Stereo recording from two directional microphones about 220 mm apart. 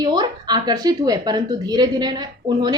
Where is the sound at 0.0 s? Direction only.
20° right (ahead or behind).